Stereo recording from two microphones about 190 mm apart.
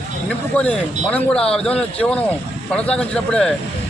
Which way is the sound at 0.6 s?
5° left (ahead or behind).